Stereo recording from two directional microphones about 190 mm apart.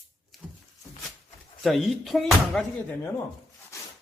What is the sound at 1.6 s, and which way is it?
Speech, centre (ahead or behind).